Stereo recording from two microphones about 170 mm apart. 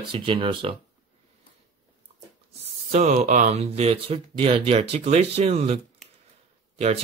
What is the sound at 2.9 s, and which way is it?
Speech, 40° right (ahead or behind).